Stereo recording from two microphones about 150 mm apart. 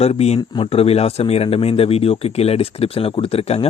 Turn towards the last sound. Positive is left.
turn(degrees=40)  # may be behind; listen again after turning